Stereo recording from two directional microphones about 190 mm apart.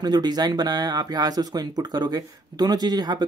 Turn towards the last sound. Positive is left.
turn(degrees=-20)  # may be behind; listen again after turning